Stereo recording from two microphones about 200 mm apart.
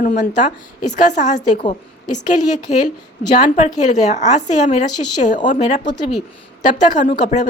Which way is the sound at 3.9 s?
35° left (ahead or behind).